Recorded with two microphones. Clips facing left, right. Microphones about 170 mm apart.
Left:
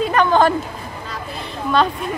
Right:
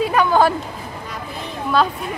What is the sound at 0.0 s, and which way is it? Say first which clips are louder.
Speech: left 1 dB; 5° right (ahead or behind).